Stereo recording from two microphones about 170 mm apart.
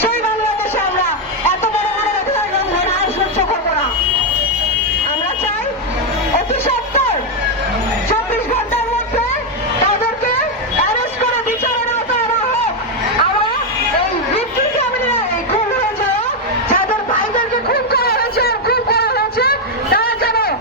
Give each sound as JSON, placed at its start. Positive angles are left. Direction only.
{"t": 6.5, "sound": "music", "side_deg": 40}
{"t": 17.3, "sound": "music", "side_deg": 65}